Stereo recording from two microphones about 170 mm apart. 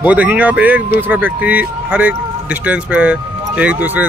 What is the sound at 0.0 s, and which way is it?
Speech, 10° right (ahead or behind).